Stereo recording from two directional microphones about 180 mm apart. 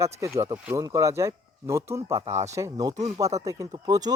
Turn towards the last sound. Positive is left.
turn(degrees=-20)  # may be behind; listen again after turning